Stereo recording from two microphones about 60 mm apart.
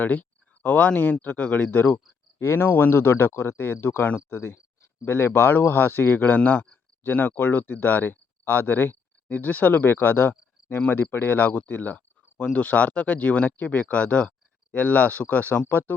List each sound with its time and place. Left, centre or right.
0.0 s speech: left
2.4 s speech: left
4.4 s speech: left